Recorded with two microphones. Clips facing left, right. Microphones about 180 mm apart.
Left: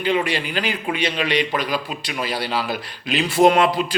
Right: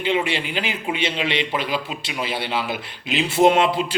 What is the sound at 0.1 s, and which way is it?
A man's voice, 20° right (ahead or behind).